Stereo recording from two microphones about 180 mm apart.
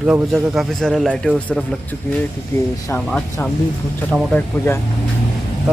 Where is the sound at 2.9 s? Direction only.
10° left (ahead or behind).